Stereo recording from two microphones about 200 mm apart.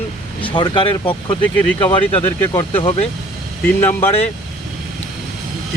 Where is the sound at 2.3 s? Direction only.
15° left (ahead or behind).